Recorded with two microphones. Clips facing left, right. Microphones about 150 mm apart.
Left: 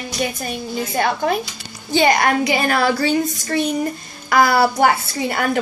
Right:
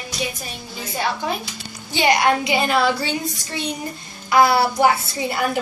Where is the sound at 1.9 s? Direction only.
45° left (ahead or behind).